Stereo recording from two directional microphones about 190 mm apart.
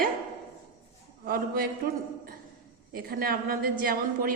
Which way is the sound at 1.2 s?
50° right (ahead or behind).